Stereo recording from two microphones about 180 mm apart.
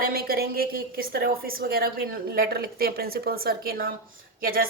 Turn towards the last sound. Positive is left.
turn(degrees=-55)  # may be behind; listen again after turning